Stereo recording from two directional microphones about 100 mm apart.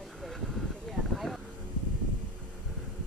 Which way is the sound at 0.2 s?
5° left (ahead or behind).